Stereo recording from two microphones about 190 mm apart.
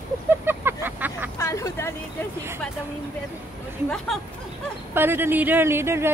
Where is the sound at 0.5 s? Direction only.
10° right (ahead or behind).